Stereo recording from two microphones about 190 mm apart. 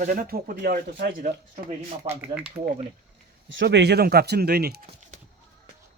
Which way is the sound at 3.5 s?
75° right (ahead or behind).